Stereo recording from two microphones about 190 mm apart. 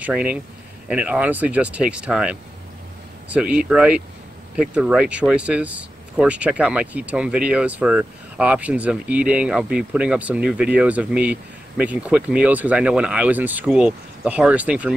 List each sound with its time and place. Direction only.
0.0 s speech: 10° right (ahead or behind)